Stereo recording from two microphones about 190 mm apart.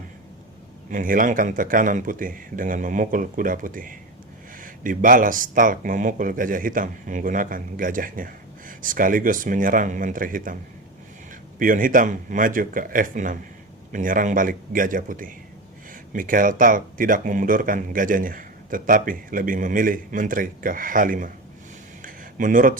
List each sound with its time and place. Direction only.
0.9 s speech: 45° right (ahead or behind)
11.6 s speech: 45° right (ahead or behind)
22.0 s a sound: 45° right (ahead or behind)